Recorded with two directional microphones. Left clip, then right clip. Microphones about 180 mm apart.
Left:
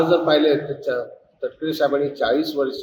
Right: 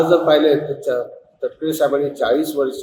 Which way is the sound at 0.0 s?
5° right (ahead or behind).